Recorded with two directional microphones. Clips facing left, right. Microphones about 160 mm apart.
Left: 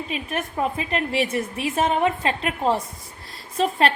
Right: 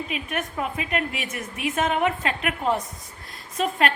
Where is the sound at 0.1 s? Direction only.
30° left (ahead or behind).